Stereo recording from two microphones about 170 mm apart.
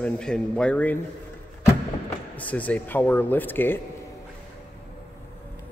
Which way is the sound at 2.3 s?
10° left (ahead or behind).